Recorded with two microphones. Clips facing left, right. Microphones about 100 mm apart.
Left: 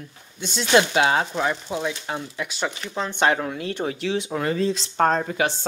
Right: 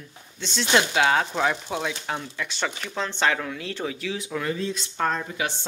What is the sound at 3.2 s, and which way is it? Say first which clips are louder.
Speech: left 4 dB; 30° left (ahead or behind).